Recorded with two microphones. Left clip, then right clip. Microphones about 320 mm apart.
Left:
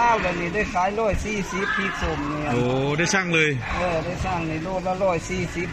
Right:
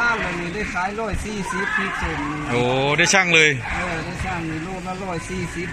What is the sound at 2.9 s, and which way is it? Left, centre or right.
Speech, centre.